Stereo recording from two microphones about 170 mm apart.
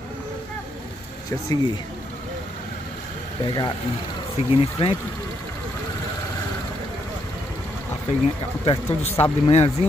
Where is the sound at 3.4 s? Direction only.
25° left (ahead or behind).